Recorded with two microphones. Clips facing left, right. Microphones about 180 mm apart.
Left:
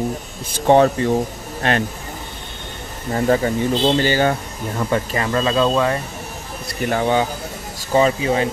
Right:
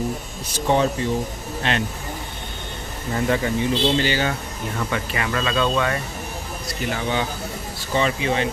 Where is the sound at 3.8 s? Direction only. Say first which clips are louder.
Left 7 dB; 45° left (ahead or behind).